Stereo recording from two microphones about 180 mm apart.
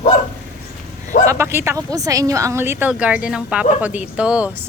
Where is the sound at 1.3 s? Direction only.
15° right (ahead or behind).